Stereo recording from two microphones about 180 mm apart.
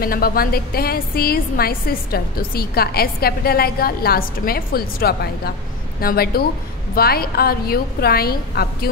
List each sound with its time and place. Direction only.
0.0 s a woman's voice: 55° left (ahead or behind)